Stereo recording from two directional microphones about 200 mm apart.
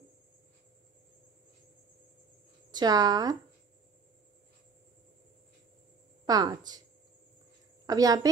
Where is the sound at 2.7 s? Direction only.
20° right (ahead or behind).